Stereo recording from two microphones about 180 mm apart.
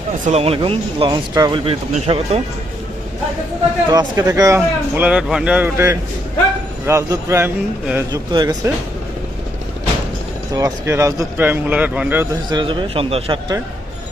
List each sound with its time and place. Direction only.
0.3 s speech: 35° right (ahead or behind)
3.8 s speech: 20° right (ahead or behind)
8.3 s speech: 25° right (ahead or behind)
10.5 s speech: 15° right (ahead or behind)
12.5 s speech: 25° right (ahead or behind)